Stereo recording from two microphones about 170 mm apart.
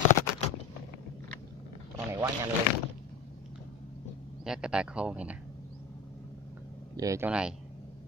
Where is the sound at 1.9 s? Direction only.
15° right (ahead or behind).